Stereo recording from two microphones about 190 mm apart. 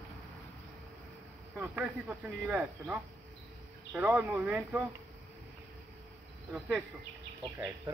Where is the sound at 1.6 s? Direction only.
5° right (ahead or behind).